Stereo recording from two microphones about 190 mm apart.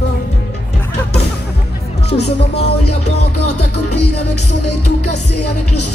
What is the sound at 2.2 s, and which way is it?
Music, 60° left (ahead or behind).